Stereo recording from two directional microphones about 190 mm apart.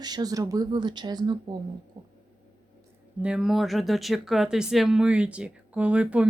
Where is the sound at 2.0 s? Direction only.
30° right (ahead or behind).